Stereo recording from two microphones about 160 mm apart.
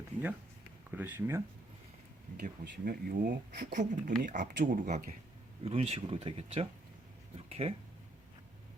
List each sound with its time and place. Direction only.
0.9 s speech: 10° right (ahead or behind)
2.4 s speech: 60° right (ahead or behind)
5.6 s speech: 40° right (ahead or behind)